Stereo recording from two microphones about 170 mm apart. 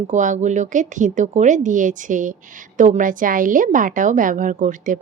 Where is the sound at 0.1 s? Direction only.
45° right (ahead or behind).